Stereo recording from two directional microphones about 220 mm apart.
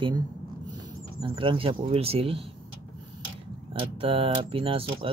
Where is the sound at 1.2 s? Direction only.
25° right (ahead or behind).